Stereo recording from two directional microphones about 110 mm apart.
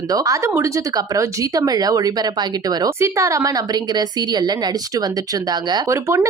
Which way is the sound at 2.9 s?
25° right (ahead or behind).